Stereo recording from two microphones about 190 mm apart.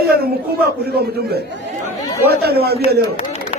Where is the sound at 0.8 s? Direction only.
55° right (ahead or behind).